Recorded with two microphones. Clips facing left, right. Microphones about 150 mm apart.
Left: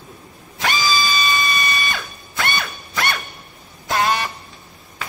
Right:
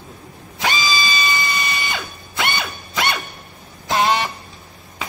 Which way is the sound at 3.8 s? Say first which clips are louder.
Right 2 dB; 20° right (ahead or behind).